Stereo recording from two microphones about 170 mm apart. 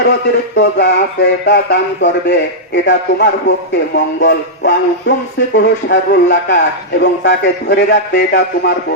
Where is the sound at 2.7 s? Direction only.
90° left.